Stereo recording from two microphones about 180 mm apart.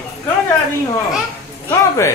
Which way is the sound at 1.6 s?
15° left (ahead or behind).